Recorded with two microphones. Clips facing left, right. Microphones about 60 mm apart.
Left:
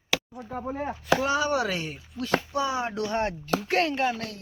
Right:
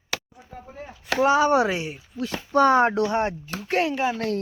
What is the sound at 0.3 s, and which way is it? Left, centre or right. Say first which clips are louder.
Speech: left 8 dB; left.